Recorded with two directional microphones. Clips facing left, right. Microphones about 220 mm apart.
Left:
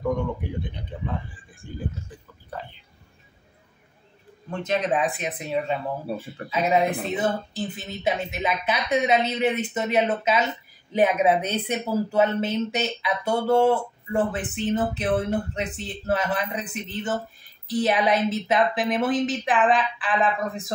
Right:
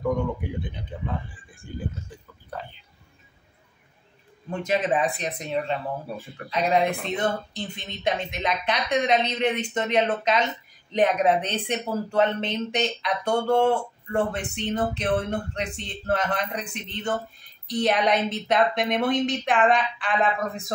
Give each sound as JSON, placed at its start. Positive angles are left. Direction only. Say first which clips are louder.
{"t": 0.0, "sound": "a woman's voice", "louder": "even", "side_deg": 0}
{"t": 4.5, "sound": "a woman's voice", "louder": "even", "side_deg": -5}
{"t": 6.0, "sound": "speech", "louder": "left 4 dB", "side_deg": 30}
{"t": 6.5, "sound": "a woman's voice", "louder": "left 1 dB", "side_deg": 5}